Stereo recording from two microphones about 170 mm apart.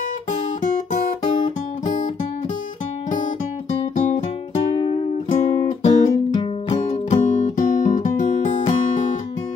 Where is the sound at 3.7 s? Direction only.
35° left (ahead or behind).